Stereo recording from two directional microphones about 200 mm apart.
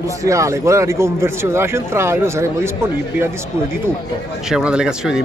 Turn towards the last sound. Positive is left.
turn(degrees=-5)  # may be behind; listen again after turning